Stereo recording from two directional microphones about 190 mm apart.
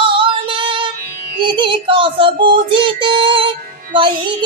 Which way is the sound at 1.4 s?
25° right (ahead or behind).